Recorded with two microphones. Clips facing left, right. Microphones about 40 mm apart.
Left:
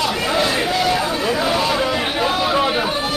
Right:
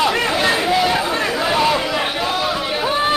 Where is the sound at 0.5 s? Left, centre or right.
Centre.